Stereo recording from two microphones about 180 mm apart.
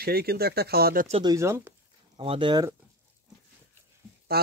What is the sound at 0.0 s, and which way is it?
Speech, 60° right (ahead or behind).